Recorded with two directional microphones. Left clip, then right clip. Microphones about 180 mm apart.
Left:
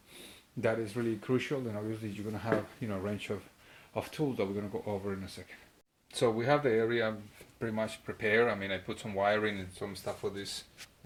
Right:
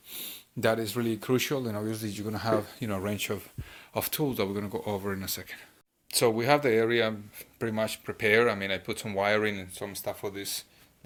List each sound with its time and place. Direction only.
0.6 s speech: 35° right (ahead or behind)
9.7 s speech: 20° right (ahead or behind)